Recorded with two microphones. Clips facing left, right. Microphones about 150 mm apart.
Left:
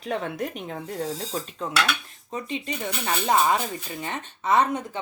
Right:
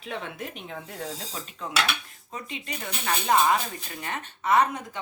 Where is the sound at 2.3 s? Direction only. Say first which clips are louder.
Left 7 dB; 20° left (ahead or behind).